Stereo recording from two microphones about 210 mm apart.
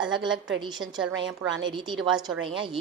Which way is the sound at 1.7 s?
20° right (ahead or behind).